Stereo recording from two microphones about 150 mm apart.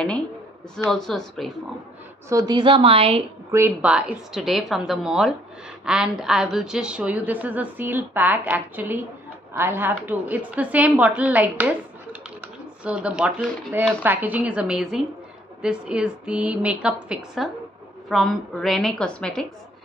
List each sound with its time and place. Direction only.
0.8 s a woman's voice: 5° left (ahead or behind)
2.2 s a woman's voice: 25° right (ahead or behind)
3.5 s a woman's voice: 10° right (ahead or behind); by 19.4 s 5° left (ahead or behind)